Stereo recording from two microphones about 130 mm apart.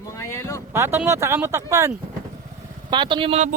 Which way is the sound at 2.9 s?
35° right (ahead or behind).